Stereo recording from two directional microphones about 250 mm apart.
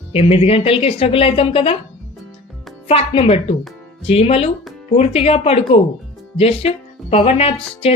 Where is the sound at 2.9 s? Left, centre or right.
Left.